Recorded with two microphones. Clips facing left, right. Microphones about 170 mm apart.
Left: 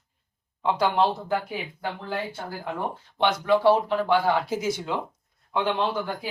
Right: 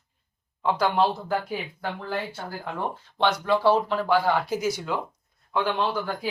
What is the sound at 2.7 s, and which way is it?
Speech, 15° left (ahead or behind).